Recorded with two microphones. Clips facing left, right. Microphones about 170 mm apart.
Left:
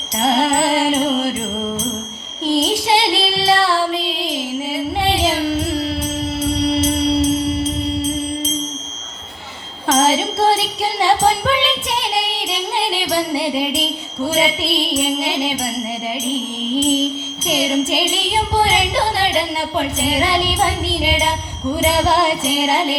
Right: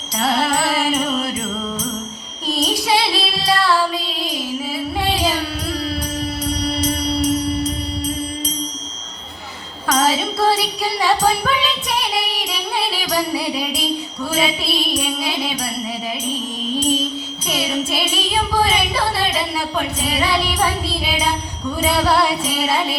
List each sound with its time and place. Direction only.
0.2 s music: 25° left (ahead or behind)
2.5 s female singing: 25° left (ahead or behind)
6.4 s music: 25° left (ahead or behind)
9.8 s music: 25° left (ahead or behind)